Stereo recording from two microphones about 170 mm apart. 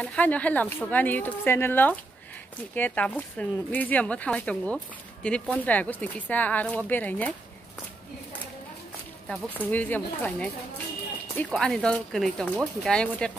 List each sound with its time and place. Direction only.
0.0 s speech: 10° left (ahead or behind)
9.3 s speech: 10° left (ahead or behind)